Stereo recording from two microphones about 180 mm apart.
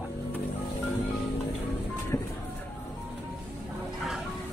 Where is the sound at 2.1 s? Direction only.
15° left (ahead or behind).